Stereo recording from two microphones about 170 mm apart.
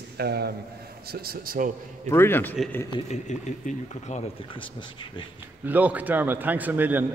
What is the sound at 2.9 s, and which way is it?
Speech, 40° left (ahead or behind).